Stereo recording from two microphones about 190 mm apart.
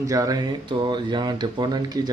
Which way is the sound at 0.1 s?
20° right (ahead or behind).